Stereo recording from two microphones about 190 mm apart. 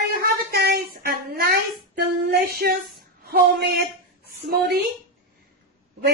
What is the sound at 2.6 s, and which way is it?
Speech, 55° right (ahead or behind).